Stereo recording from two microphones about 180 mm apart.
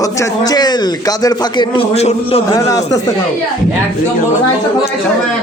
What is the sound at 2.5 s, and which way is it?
Speech, 20° left (ahead or behind).